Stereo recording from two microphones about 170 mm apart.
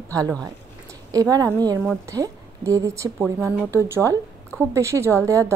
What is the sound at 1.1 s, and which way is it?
A woman's voice, 20° right (ahead or behind).